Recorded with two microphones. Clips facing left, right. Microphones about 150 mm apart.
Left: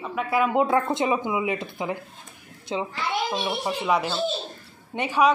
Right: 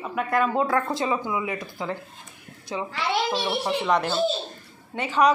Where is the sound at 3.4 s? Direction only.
Centre (ahead or behind).